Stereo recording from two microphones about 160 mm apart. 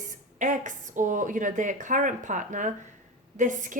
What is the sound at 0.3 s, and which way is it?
A woman's voice, 50° right (ahead or behind).